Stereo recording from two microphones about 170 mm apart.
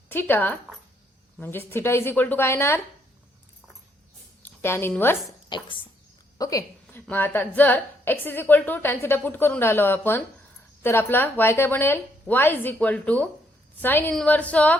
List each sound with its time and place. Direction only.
0.1 s a woman's voice: 10° left (ahead or behind)
4.4 s a woman's voice: 15° left (ahead or behind)
5.5 s a woman's voice: 30° left (ahead or behind); by 14.8 s 10° left (ahead or behind)